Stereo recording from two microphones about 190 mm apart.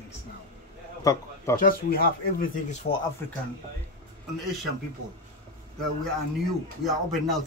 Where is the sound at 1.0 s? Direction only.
15° left (ahead or behind).